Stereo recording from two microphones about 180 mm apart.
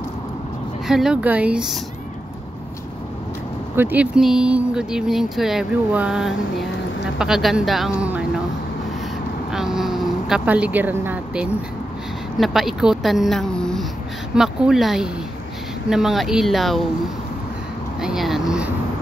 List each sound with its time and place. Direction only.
0.8 s speech: 5° right (ahead or behind)
3.7 s speech: 10° right (ahead or behind)
9.5 s speech: centre (ahead or behind)
18.0 s speech: centre (ahead or behind)